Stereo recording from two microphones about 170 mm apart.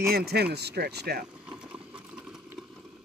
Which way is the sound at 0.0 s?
65° right (ahead or behind).